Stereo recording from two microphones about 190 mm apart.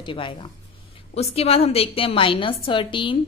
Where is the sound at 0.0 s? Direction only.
25° left (ahead or behind).